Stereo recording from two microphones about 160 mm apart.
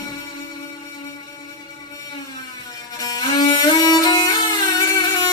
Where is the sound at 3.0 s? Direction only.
25° left (ahead or behind).